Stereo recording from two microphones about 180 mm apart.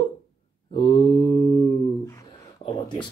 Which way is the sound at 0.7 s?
25° left (ahead or behind).